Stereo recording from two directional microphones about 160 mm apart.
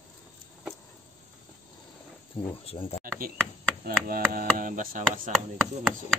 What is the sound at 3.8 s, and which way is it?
Speech, 65° right (ahead or behind).